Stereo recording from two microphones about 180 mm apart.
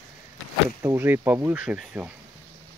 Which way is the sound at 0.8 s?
10° right (ahead or behind).